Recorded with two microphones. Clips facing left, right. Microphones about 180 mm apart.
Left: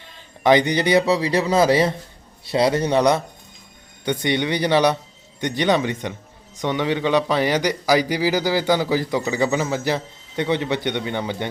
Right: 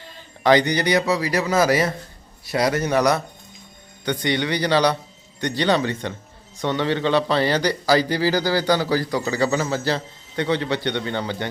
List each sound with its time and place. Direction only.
0.4 s a man's voice: 20° left (ahead or behind)